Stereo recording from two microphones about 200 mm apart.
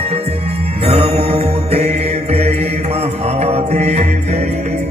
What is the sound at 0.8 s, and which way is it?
Mantra, 30° right (ahead or behind).